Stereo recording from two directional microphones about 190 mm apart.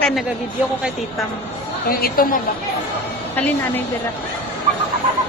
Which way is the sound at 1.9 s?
50° left (ahead or behind).